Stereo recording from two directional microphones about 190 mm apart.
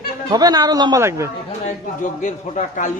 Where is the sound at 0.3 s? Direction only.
20° right (ahead or behind).